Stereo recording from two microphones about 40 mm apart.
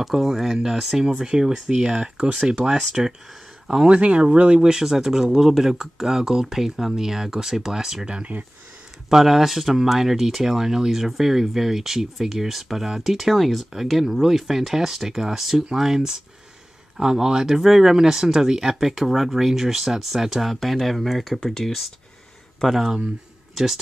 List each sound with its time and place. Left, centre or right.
0.0 s speech: centre
2.1 s speech: right
3.9 s speech: right
4.6 s speech: centre
9.1 s speech: centre